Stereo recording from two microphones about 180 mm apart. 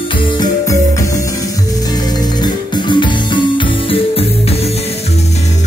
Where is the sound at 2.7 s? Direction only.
25° left (ahead or behind).